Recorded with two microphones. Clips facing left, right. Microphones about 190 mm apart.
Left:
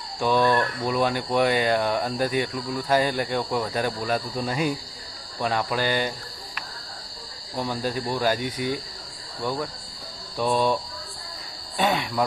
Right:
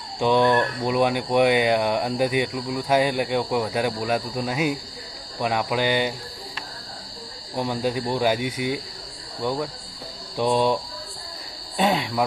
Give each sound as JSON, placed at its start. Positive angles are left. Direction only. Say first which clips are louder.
{"t": 0.2, "sound": "speech", "louder": "right 2 dB", "side_deg": -20}
{"t": 7.5, "sound": "speech", "louder": "right 3 dB", "side_deg": -15}
{"t": 11.8, "sound": "speech", "louder": "right 2 dB", "side_deg": -20}